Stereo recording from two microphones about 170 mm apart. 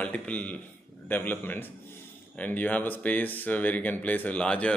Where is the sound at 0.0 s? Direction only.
5° left (ahead or behind).